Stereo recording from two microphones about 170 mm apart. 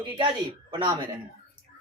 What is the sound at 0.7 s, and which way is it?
Speech, 25° right (ahead or behind).